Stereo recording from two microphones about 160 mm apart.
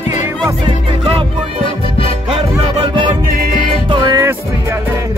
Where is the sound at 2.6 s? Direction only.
30° right (ahead or behind).